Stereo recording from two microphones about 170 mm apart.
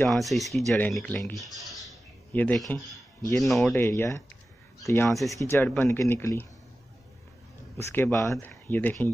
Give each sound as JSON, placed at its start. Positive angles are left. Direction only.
{"t": 0.0, "sound": "speech", "side_deg": 0}
{"t": 3.7, "sound": "speech", "side_deg": 15}
{"t": 5.1, "sound": "speech", "side_deg": 0}
{"t": 5.4, "sound": "speech", "side_deg": 15}
{"t": 7.7, "sound": "speech", "side_deg": 15}